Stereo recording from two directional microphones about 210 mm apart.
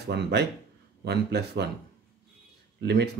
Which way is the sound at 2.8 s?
55° right (ahead or behind).